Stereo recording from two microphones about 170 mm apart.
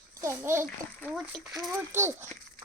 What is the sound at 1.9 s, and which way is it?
Speech, 15° right (ahead or behind).